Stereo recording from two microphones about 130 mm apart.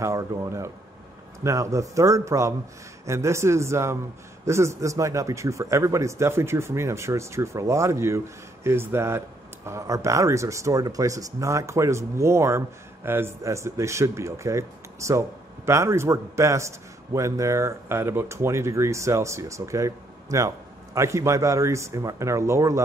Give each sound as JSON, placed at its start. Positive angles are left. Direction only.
{"t": 0.0, "sound": "speech", "side_deg": -25}